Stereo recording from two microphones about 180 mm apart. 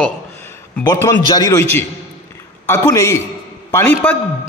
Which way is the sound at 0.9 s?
15° left (ahead or behind).